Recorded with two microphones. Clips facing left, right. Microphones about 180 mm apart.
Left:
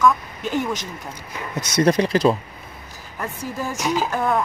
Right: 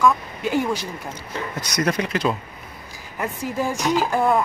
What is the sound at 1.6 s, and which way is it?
Speech, 30° left (ahead or behind).